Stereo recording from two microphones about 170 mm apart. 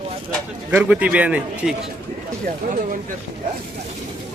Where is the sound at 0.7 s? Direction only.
5° right (ahead or behind).